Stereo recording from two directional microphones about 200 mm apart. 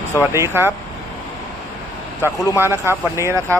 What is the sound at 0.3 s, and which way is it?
Speech, 10° right (ahead or behind).